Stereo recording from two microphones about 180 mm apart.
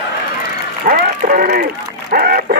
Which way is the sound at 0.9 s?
55° right (ahead or behind).